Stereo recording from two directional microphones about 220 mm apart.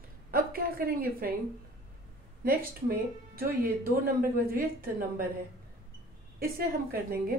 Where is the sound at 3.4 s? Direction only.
40° right (ahead or behind).